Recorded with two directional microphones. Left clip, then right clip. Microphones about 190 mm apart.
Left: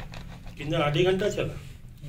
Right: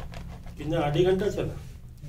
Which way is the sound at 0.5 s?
30° right (ahead or behind).